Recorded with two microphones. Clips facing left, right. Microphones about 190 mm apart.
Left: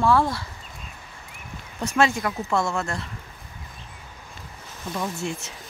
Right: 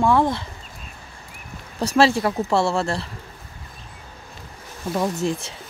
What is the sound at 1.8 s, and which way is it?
Speech, 35° right (ahead or behind).